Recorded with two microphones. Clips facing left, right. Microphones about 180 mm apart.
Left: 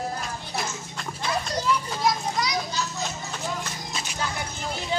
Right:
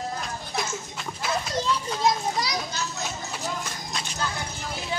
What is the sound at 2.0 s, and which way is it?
Children playing, 30° right (ahead or behind).